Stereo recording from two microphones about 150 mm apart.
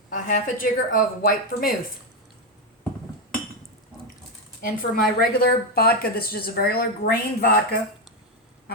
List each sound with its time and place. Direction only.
0.1 s speech: 60° left (ahead or behind)
4.6 s a woman's voice: 75° left (ahead or behind); by 7.5 s 90° left